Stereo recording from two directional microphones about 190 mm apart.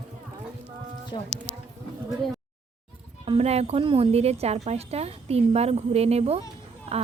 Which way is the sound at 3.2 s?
35° right (ahead or behind).